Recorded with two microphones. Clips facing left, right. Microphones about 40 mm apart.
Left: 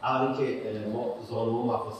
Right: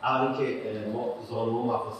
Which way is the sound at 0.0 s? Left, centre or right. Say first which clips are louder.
Right 1 dB; centre.